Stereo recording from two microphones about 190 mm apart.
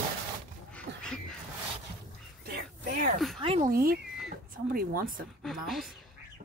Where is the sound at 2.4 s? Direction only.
55° right (ahead or behind).